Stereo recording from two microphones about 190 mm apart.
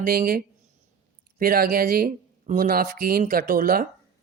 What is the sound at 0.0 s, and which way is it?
Speech, 50° right (ahead or behind).